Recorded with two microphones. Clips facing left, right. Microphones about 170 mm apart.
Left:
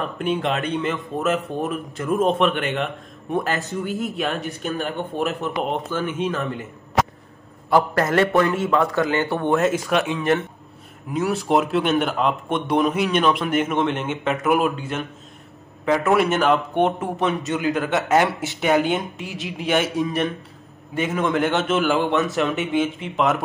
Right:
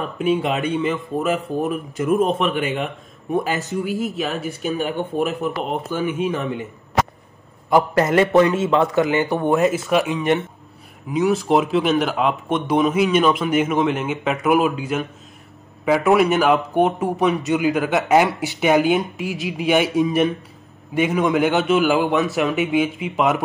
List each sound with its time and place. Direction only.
0.0 s speech: centre (ahead or behind)
8.5 s a man's voice: 25° right (ahead or behind)
8.8 s speech: centre (ahead or behind)